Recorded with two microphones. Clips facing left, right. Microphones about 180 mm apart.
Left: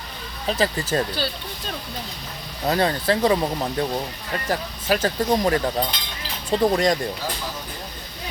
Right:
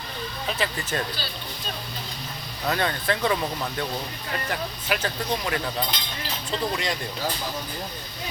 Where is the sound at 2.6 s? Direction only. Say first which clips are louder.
Left 5 dB; 30° left (ahead or behind).